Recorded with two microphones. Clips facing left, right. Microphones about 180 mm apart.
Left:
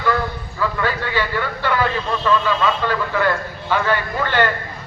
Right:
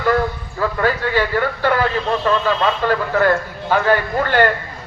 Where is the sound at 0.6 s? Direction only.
45° right (ahead or behind).